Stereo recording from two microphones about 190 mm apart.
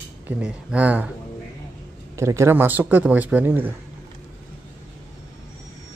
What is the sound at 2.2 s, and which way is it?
Speech, 15° right (ahead or behind).